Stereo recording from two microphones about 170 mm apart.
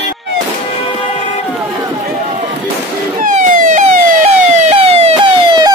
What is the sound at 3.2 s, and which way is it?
Emergency vehicle, 50° right (ahead or behind).